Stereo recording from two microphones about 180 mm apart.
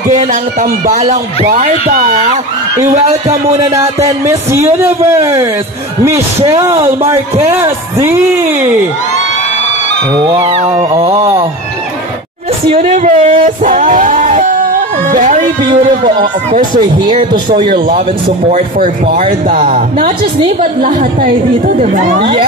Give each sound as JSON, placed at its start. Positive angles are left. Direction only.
{"t": 0.1, "sound": "speech", "side_deg": -45}
{"t": 3.5, "sound": "speech", "side_deg": -15}
{"t": 10.2, "sound": "speech", "side_deg": -25}
{"t": 12.8, "sound": "speech", "side_deg": -35}
{"t": 17.3, "sound": "speech", "side_deg": -25}
{"t": 17.7, "sound": "speech", "side_deg": -50}